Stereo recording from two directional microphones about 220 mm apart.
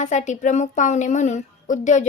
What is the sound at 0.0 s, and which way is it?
A woman's voice, 35° left (ahead or behind).